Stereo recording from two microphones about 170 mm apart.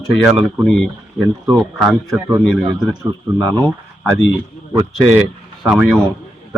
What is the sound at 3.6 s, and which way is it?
Speech, 5° left (ahead or behind).